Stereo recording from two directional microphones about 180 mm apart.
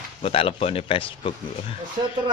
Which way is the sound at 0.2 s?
30° left (ahead or behind).